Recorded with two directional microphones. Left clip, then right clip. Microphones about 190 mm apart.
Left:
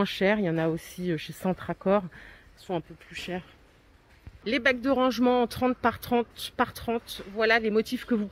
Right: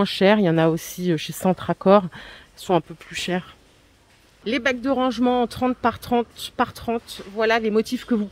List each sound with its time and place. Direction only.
0.0 s speech: 15° right (ahead or behind)
4.5 s speech: 5° left (ahead or behind)